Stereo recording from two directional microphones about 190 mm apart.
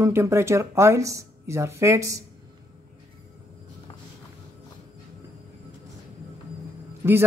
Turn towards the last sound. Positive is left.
turn(degrees=-15)  # may be behind; listen again after turning